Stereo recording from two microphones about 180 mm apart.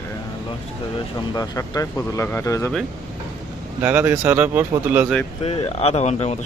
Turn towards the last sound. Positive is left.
turn(degrees=35)  # may be behind; listen again after turning